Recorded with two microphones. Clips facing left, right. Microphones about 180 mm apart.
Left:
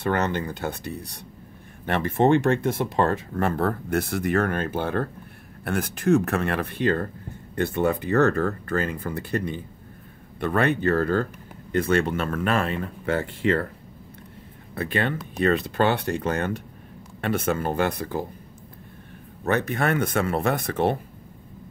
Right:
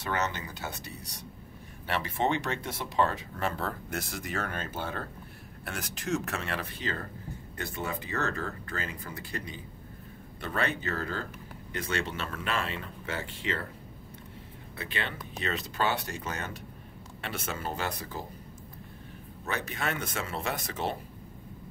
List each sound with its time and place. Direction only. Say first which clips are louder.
0.0 s speech: left 8 dB; 55° left (ahead or behind)
14.8 s speech: left 11 dB; 50° left (ahead or behind)
19.4 s speech: left 10 dB; 55° left (ahead or behind)